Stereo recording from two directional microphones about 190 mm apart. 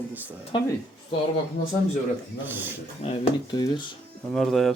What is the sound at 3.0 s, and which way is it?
Speech, 35° left (ahead or behind).